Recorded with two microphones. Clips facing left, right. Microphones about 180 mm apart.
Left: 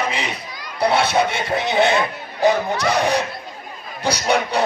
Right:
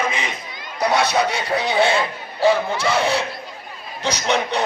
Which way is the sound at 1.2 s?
25° left (ahead or behind).